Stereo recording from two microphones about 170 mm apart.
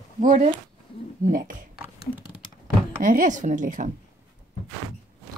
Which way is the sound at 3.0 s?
55° right (ahead or behind).